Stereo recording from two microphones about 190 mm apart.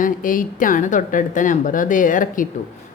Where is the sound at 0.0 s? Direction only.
45° left (ahead or behind).